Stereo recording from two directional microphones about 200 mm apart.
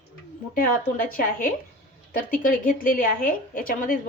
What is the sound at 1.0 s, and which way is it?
A woman's voice, 45° left (ahead or behind).